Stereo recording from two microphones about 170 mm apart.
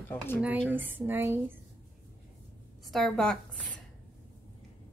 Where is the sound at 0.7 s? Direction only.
10° right (ahead or behind).